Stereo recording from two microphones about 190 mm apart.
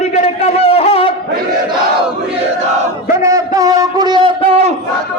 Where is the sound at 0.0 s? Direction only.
30° left (ahead or behind).